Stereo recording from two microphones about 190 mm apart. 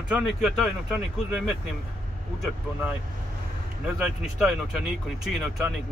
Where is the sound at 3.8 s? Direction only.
5° right (ahead or behind).